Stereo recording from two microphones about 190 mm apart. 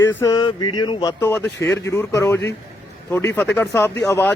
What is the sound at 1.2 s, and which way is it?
A man's voice, 5° left (ahead or behind).